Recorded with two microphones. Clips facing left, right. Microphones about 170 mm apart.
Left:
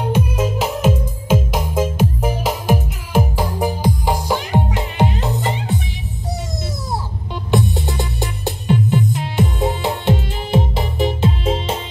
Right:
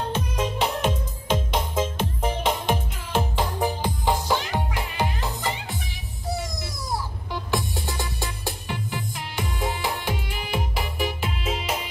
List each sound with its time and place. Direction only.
0.0 s music: 10° left (ahead or behind)
7.5 s music: 20° left (ahead or behind)